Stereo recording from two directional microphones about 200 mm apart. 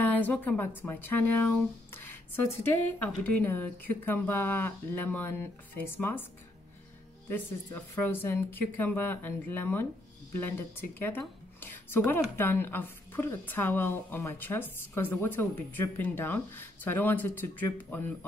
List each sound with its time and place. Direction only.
0.0 s a woman's voice: 10° left (ahead or behind)
7.9 s a woman's voice: 10° left (ahead or behind)